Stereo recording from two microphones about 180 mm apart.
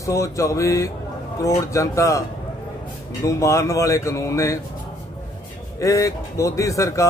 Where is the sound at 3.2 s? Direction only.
15° left (ahead or behind).